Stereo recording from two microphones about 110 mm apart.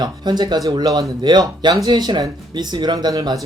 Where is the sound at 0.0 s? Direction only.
40° right (ahead or behind).